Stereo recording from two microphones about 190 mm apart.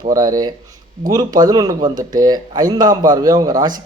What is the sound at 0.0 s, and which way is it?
A man's voice, 20° right (ahead or behind).